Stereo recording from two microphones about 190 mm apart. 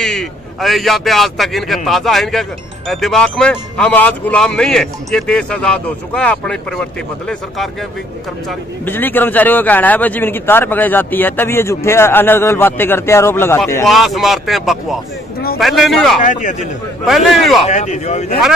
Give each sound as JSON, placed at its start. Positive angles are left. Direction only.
{"t": 0.0, "sound": "a man's voice", "side_deg": 0}
{"t": 13.8, "sound": "speech", "side_deg": 0}
{"t": 16.2, "sound": "speech", "side_deg": 40}
{"t": 17.0, "sound": "speech", "side_deg": 0}
{"t": 17.6, "sound": "speech", "side_deg": 40}